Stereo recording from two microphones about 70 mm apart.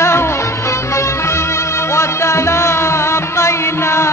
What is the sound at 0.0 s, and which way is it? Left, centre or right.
Music, left.